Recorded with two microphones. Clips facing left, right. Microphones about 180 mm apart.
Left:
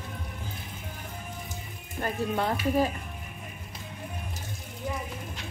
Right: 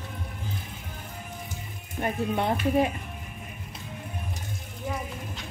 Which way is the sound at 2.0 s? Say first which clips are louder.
Right 2 dB; 20° right (ahead or behind).